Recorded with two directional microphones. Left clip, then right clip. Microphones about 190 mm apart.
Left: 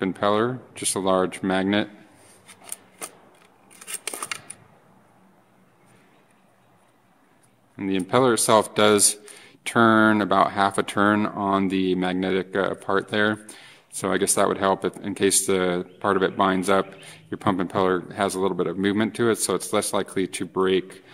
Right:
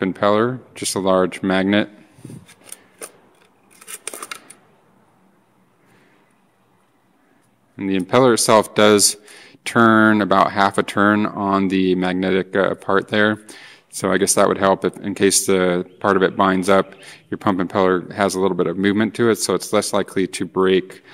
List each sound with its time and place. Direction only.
0.0 s a man's voice: 25° right (ahead or behind)
2.4 s a sound: 5° left (ahead or behind)
3.8 s scissors: centre (ahead or behind)
7.7 s a man's voice: 20° right (ahead or behind)